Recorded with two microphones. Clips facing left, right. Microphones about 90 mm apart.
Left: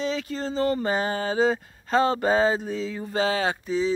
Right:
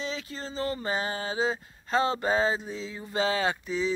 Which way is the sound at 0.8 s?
55° left (ahead or behind).